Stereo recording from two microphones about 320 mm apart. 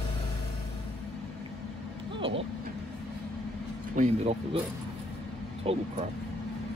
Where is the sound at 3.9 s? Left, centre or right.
Right.